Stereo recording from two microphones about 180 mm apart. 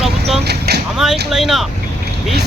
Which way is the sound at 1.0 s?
Centre (ahead or behind).